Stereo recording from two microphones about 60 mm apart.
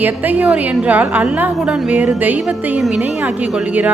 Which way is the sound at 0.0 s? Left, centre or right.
Right.